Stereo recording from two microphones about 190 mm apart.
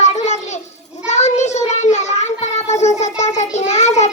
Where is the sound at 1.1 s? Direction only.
35° left (ahead or behind).